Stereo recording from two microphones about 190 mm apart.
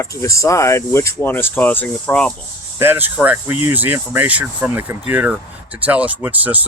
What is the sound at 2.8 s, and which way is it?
Speech, 10° right (ahead or behind).